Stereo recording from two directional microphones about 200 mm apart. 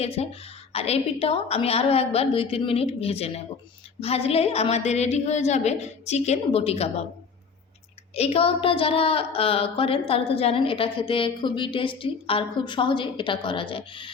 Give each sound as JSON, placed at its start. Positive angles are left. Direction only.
{"t": 0.0, "sound": "a woman's voice", "side_deg": 30}
{"t": 8.1, "sound": "a woman's voice", "side_deg": 30}